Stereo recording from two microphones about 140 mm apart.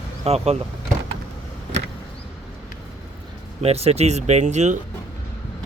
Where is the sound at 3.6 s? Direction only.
45° right (ahead or behind).